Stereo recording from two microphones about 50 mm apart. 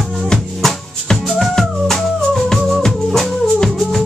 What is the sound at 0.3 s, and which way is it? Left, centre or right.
Music, centre.